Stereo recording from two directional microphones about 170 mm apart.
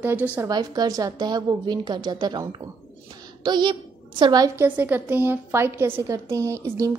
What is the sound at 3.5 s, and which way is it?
A woman's voice, 25° right (ahead or behind).